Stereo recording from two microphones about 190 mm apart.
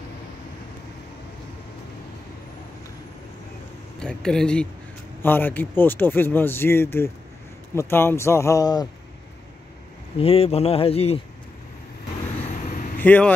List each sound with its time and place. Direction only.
4.0 s speech: 5° left (ahead or behind); by 8.8 s 20° left (ahead or behind)
10.1 s speech: 30° left (ahead or behind)
13.0 s speech: 10° left (ahead or behind)